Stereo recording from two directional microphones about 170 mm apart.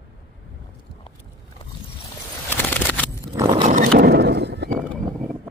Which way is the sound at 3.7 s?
60° right (ahead or behind).